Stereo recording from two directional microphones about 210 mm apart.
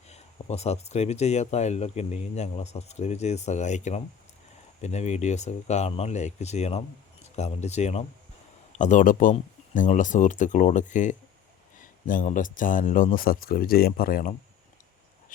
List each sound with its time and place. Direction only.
0.1 s speech: 30° left (ahead or behind)